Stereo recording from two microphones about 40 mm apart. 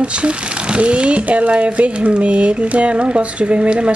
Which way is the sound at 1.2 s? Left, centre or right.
Right.